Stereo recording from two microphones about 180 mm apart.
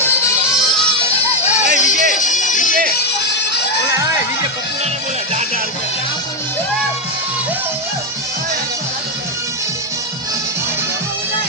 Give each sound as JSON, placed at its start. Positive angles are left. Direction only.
{"t": 1.6, "sound": "music", "side_deg": 45}
{"t": 2.9, "sound": "music", "side_deg": 70}
{"t": 3.9, "sound": "a sound", "side_deg": -15}